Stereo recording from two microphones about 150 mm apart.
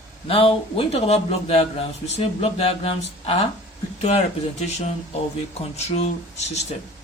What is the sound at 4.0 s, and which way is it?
Speech, 45° left (ahead or behind).